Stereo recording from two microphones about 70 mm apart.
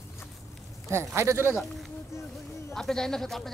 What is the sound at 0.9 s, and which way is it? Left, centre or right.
Speech, right.